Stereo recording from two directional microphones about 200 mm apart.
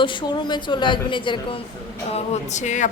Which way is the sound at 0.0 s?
25° left (ahead or behind).